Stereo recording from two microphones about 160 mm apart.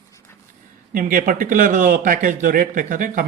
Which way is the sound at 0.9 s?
60° right (ahead or behind).